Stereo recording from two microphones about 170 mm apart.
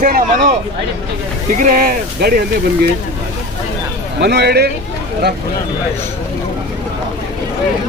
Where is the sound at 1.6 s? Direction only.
55° right (ahead or behind).